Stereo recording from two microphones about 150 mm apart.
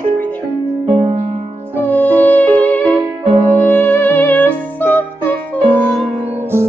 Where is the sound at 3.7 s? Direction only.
10° left (ahead or behind).